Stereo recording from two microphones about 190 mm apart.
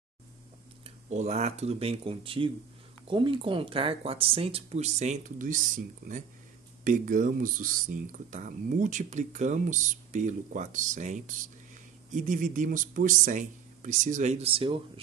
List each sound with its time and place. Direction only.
0.8 s speech: 35° right (ahead or behind)